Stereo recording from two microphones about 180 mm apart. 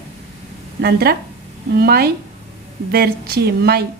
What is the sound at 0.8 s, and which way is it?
Speech, 60° right (ahead or behind).